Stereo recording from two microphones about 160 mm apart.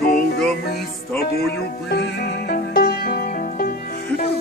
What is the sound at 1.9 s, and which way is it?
Music, 80° left.